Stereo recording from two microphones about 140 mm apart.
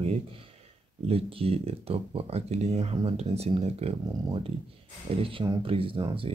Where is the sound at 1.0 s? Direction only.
45° right (ahead or behind).